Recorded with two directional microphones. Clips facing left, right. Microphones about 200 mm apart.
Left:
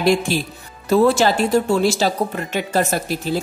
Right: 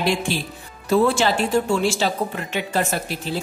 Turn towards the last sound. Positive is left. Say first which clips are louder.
# left 4 dB
turn(degrees=40)  # may be behind; listen again after turning